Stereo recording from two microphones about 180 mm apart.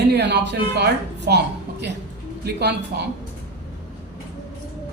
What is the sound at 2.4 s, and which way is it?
Speech, 65° right (ahead or behind).